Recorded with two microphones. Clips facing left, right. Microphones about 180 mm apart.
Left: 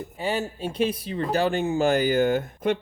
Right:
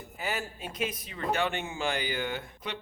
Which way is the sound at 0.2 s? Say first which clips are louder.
Left 8 dB; 30° left (ahead or behind).